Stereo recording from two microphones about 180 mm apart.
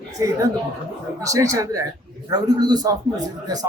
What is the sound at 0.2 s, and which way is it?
A man's voice, 15° right (ahead or behind).